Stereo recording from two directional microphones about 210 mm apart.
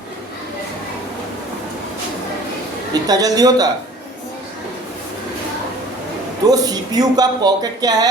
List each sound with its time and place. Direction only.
2.9 s a woman's voice: 15° right (ahead or behind)
6.5 s speech: 20° right (ahead or behind)